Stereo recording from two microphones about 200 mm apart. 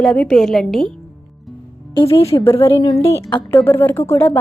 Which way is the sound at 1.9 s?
15° left (ahead or behind).